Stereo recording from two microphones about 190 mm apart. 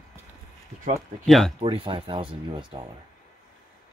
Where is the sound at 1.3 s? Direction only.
Centre (ahead or behind).